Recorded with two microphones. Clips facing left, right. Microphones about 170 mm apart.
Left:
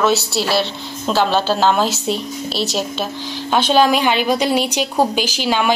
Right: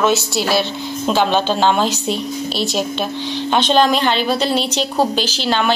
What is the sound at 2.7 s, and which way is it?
A woman's voice, 5° left (ahead or behind).